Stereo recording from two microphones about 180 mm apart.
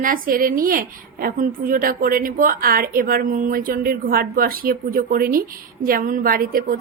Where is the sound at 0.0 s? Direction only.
50° right (ahead or behind).